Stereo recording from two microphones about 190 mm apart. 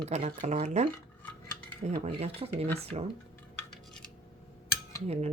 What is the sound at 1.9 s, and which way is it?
Speech, 35° right (ahead or behind).